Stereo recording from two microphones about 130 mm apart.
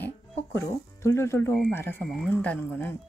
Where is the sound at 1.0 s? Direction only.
20° left (ahead or behind).